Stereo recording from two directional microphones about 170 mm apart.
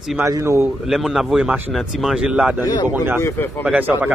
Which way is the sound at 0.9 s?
Centre (ahead or behind).